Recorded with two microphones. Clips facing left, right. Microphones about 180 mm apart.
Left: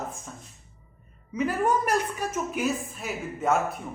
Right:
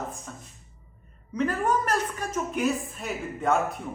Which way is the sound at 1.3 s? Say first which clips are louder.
Left 1 dB; 10° left (ahead or behind).